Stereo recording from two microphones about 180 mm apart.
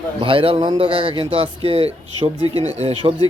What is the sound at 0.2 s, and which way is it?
Speech, 30° right (ahead or behind).